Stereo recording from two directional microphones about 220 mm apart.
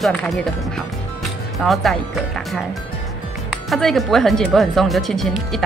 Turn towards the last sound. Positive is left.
turn(degrees=0)  # may be behind; listen again after turning